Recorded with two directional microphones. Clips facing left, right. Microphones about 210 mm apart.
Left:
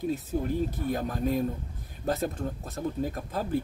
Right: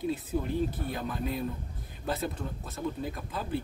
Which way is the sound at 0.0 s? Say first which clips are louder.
Left 2 dB; 45° left (ahead or behind).